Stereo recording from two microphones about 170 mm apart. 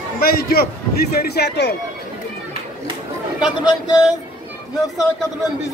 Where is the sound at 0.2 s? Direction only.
65° left (ahead or behind).